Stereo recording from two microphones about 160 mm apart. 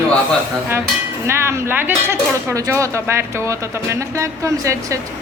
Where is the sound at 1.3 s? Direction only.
15° right (ahead or behind).